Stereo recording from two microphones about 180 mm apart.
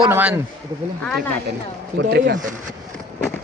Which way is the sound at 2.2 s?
45° right (ahead or behind).